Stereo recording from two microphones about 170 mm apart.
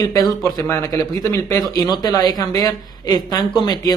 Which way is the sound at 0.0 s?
20° left (ahead or behind).